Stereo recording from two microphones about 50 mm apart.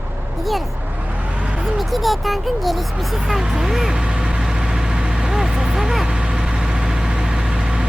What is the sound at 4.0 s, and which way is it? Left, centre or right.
Vehicle, centre.